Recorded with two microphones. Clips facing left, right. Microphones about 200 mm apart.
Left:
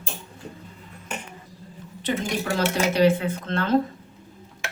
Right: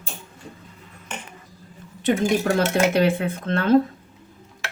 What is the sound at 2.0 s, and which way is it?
A woman's voice, 50° right (ahead or behind).